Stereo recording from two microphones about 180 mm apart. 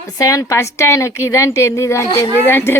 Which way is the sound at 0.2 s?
20° left (ahead or behind).